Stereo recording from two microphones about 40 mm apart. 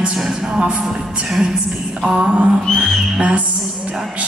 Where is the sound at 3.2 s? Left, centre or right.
Right.